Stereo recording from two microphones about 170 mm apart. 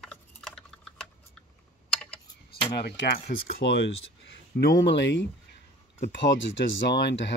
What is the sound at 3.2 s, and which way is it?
Speech, 70° left (ahead or behind).